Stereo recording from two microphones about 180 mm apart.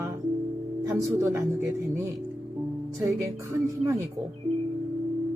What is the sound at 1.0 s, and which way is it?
Speech, 15° right (ahead or behind).